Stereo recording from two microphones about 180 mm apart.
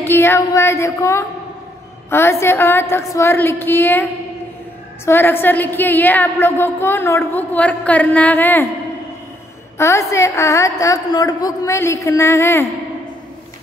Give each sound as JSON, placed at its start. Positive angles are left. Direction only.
{"t": 0.0, "sound": "a woman's voice", "side_deg": 15}
{"t": 9.8, "sound": "a woman's voice", "side_deg": 15}